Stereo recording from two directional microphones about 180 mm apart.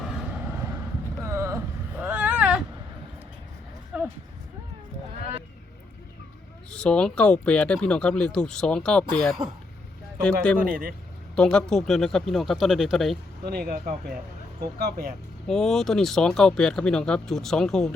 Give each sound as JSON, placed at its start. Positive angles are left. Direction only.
{"t": 1.2, "sound": "a sound", "side_deg": -15}
{"t": 3.9, "sound": "a sound", "side_deg": -5}
{"t": 6.7, "sound": "speech", "side_deg": 5}
{"t": 10.7, "sound": "speech", "side_deg": -55}
{"t": 11.3, "sound": "speech", "side_deg": 5}
{"t": 13.4, "sound": "speech", "side_deg": -60}
{"t": 15.4, "sound": "speech", "side_deg": 0}